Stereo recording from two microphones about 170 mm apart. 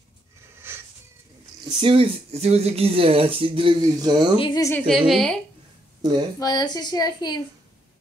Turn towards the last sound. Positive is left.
turn(degrees=25)  # may be behind; listen again after turning